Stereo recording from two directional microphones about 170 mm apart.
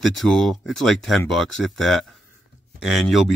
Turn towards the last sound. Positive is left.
turn(degrees=0)  # may be behind; listen again after turning